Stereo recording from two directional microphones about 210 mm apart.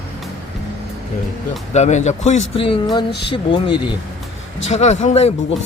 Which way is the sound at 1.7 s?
35° left (ahead or behind).